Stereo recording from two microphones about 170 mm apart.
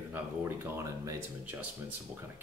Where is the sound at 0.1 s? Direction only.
15° right (ahead or behind).